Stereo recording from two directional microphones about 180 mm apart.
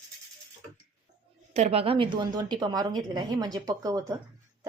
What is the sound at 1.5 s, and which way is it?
A woman's voice, 35° right (ahead or behind).